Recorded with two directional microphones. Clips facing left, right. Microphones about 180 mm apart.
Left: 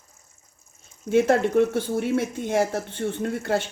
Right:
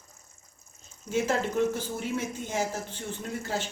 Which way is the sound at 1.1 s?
60° left (ahead or behind).